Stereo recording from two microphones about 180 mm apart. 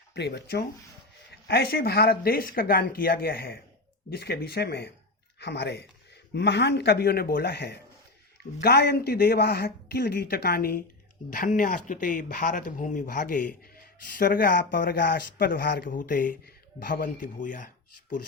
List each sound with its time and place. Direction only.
0.1 s speech: 70° left (ahead or behind); by 17.7 s 45° left (ahead or behind)